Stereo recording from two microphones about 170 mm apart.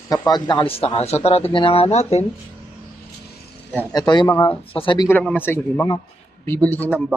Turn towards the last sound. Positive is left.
turn(degrees=10)  # may be behind; listen again after turning